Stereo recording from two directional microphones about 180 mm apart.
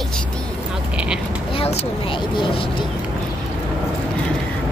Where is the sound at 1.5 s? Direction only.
30° left (ahead or behind).